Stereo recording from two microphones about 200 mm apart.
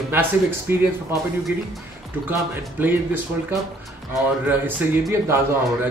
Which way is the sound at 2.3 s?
10° right (ahead or behind).